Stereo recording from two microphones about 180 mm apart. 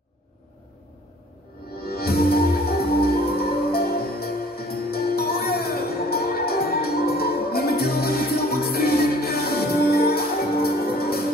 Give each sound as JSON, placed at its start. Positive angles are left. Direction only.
{"t": 1.8, "sound": "music", "side_deg": 60}